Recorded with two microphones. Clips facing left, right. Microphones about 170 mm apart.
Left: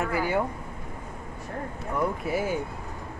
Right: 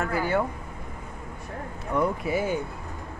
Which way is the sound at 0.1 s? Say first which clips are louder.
Right 1 dB; 10° left (ahead or behind).